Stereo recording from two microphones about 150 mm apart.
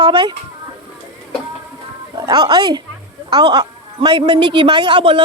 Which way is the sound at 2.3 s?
30° right (ahead or behind).